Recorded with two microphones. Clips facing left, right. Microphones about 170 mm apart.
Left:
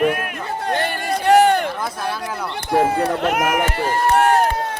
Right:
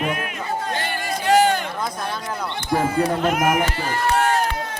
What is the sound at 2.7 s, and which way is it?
Speech, 65° left (ahead or behind).